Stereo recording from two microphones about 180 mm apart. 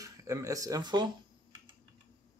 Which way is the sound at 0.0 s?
15° right (ahead or behind).